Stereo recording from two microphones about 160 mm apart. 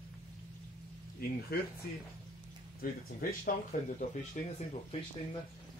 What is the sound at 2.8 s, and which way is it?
Speech, 65° left (ahead or behind).